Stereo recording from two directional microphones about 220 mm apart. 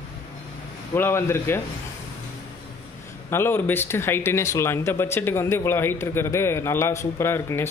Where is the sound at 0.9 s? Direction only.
10° left (ahead or behind).